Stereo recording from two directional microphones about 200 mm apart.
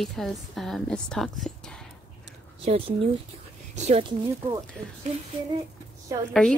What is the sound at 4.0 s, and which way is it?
Speech, 20° right (ahead or behind).